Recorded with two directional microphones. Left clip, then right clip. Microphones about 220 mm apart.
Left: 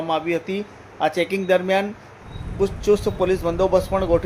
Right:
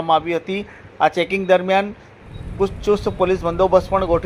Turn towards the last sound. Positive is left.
turn(degrees=-5)  # may be behind; listen again after turning